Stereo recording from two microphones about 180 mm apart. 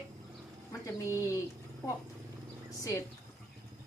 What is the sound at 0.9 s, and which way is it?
Speech, 15° left (ahead or behind).